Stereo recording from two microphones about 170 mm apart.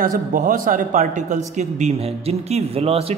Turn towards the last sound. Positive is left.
turn(degrees=-35)  # may be behind; listen again after turning